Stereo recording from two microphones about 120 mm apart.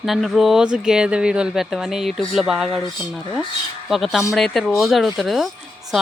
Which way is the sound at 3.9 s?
Centre (ahead or behind).